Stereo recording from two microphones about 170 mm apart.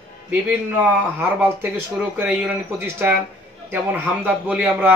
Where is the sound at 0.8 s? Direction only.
10° right (ahead or behind).